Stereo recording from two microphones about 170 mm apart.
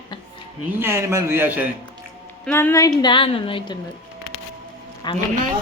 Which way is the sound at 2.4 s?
10° left (ahead or behind).